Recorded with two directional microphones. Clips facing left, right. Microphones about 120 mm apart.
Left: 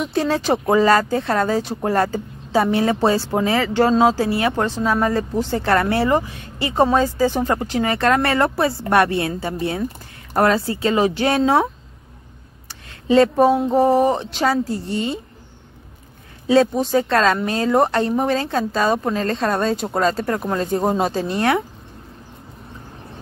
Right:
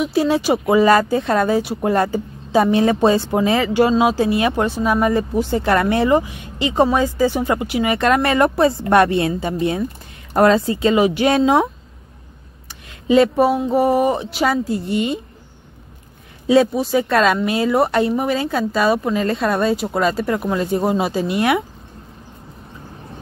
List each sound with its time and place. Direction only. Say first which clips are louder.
0.0 s speech: right 3 dB; 10° right (ahead or behind)
13.1 s speech: even; 15° right (ahead or behind)
16.7 s speech: right 1 dB; 10° right (ahead or behind)